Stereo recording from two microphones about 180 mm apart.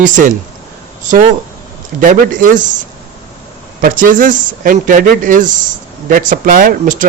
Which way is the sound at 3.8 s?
50° right (ahead or behind).